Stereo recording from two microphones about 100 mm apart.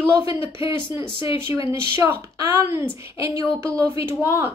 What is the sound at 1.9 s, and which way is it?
Speech, 25° right (ahead or behind).